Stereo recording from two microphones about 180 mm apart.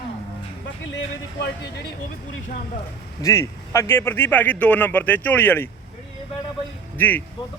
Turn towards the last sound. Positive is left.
turn(degrees=10)  # may be behind; listen again after turning